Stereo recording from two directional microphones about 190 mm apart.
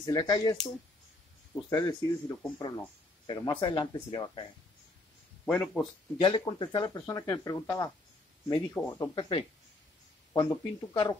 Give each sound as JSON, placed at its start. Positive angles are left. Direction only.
{"t": 0.0, "sound": "speech", "side_deg": 20}
{"t": 5.4, "sound": "speech", "side_deg": 5}
{"t": 6.2, "sound": "speech", "side_deg": 25}